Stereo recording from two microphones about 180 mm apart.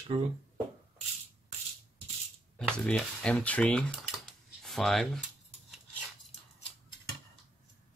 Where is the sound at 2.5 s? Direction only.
5° left (ahead or behind).